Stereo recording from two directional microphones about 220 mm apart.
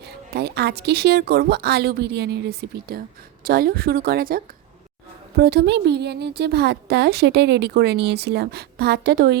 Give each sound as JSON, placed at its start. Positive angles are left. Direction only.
{"t": 0.0, "sound": "speech", "side_deg": -45}